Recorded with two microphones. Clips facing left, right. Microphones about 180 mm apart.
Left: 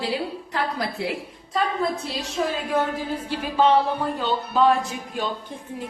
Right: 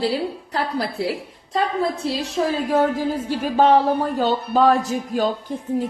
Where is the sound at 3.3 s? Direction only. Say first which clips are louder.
Right 3 dB; 45° right (ahead or behind).